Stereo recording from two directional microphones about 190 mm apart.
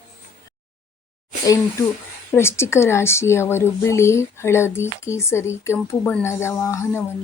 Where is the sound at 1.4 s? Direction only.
15° left (ahead or behind).